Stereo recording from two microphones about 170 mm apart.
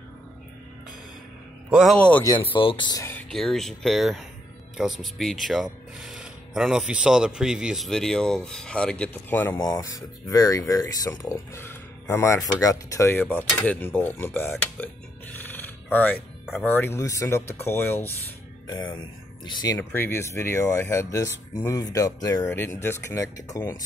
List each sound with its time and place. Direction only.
1.7 s speech: 5° right (ahead or behind)
2.0 s speech: 10° left (ahead or behind)
2.2 s speech: 30° left (ahead or behind)
3.0 s speech: 10° left (ahead or behind)
19.4 s speech: 20° left (ahead or behind)